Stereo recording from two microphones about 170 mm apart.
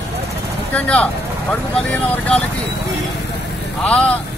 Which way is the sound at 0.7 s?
10° left (ahead or behind).